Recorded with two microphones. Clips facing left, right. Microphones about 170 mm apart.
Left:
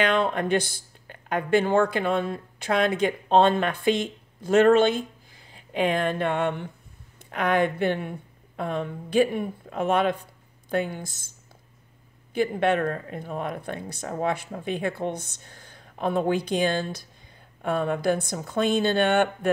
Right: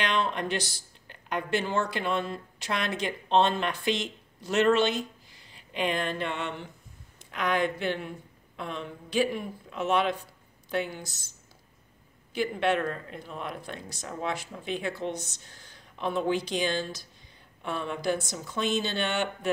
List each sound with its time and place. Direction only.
0.0 s speech: 50° left (ahead or behind)
12.4 s speech: 50° left (ahead or behind)